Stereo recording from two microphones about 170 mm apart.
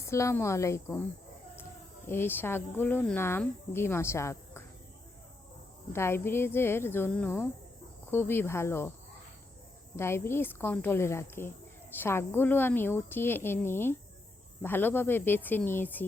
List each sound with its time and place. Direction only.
0.1 s speech: 15° left (ahead or behind)
2.0 s speech: 15° left (ahead or behind)
5.9 s speech: 15° left (ahead or behind)
9.9 s speech: 15° left (ahead or behind)